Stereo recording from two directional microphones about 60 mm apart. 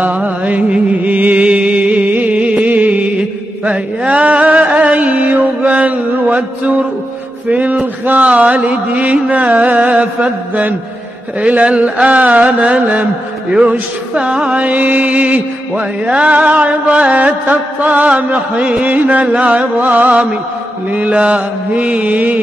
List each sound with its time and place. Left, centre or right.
0.0 s music: right